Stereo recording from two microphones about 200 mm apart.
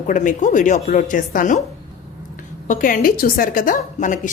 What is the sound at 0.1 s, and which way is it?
A woman's voice, 40° left (ahead or behind).